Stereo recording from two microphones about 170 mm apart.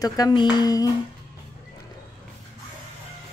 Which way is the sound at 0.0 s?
20° left (ahead or behind).